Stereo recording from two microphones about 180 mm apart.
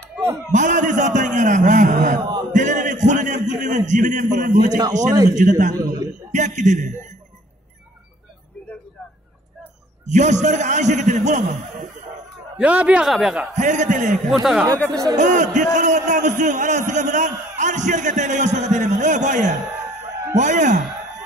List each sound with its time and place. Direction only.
0.1 s a sound: 15° right (ahead or behind)
0.5 s a man's voice: 45° right (ahead or behind)
2.5 s a sound: 45° right (ahead or behind)
5.3 s a man's voice: 45° right (ahead or behind)
6.3 s a sound: 40° right (ahead or behind)
10.0 s a man's voice: 40° right (ahead or behind)
12.5 s a man's voice: 5° right (ahead or behind)
13.6 s a man's voice: 45° right (ahead or behind)
14.3 s a man's voice: centre (ahead or behind)
14.9 s speech: 20° right (ahead or behind)
15.1 s a man's voice: 45° right (ahead or behind)